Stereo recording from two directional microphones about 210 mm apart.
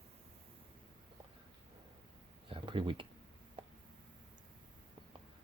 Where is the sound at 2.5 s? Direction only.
25° right (ahead or behind).